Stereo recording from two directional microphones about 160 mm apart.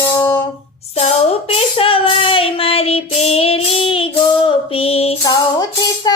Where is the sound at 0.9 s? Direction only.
40° left (ahead or behind).